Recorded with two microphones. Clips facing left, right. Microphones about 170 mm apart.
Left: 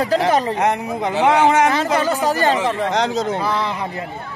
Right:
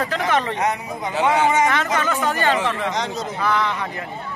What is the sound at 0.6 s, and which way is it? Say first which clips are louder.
Speech: left 4 dB; 60° left (ahead or behind).